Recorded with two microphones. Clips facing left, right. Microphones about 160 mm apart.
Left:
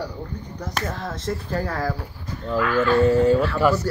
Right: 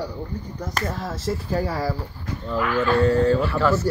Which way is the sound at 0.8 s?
5° right (ahead or behind).